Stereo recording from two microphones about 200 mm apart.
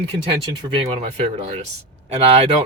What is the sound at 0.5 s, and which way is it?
Speech, 25° right (ahead or behind).